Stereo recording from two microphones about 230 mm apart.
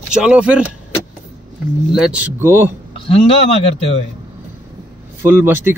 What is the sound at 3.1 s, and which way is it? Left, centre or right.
Speech, left.